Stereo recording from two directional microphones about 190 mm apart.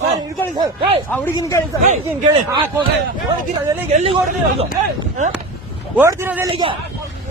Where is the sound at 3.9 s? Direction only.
35° right (ahead or behind).